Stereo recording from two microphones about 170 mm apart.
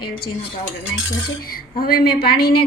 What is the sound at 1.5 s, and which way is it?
A woman's voice, 60° left (ahead or behind).